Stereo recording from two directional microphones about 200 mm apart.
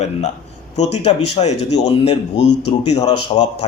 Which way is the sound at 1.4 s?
30° left (ahead or behind).